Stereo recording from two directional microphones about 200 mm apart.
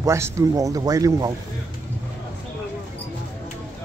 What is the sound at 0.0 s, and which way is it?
Speech, 15° right (ahead or behind).